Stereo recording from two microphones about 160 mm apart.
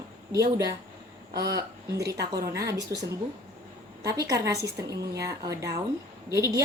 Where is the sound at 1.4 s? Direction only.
20° right (ahead or behind).